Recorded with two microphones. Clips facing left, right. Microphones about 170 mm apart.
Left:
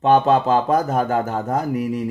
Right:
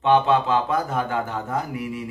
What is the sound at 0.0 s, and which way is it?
Speech, 40° left (ahead or behind).